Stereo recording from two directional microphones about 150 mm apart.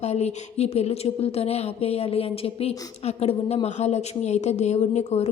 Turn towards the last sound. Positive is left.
turn(degrees=45)  # may be behind; listen again after turning